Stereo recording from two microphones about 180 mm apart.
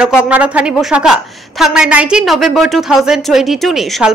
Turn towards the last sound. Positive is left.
turn(degrees=0)  # may be behind; listen again after turning